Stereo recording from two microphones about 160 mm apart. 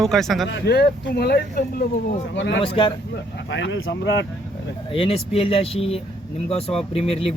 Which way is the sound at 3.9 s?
90° left.